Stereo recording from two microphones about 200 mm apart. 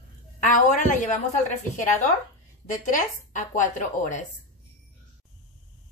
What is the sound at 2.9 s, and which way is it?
Speech, 40° left (ahead or behind).